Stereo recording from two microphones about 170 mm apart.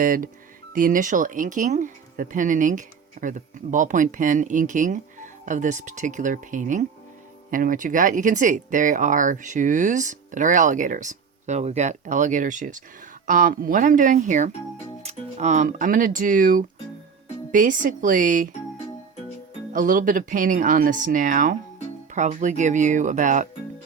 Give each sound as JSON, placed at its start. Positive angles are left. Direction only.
{"t": 0.0, "sound": "speech", "side_deg": -55}
{"t": 19.7, "sound": "speech", "side_deg": -50}